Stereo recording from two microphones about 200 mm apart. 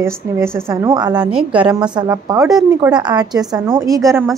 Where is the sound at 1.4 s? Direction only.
5° right (ahead or behind).